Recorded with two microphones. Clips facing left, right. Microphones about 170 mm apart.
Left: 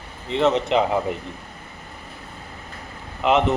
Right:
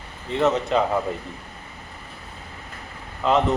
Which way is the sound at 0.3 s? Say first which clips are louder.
Left 1 dB; 20° left (ahead or behind).